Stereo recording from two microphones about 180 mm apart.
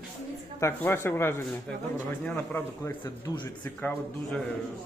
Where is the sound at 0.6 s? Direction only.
15° left (ahead or behind).